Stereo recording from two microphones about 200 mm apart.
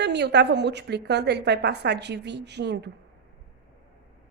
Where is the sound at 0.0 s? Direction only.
60° right (ahead or behind).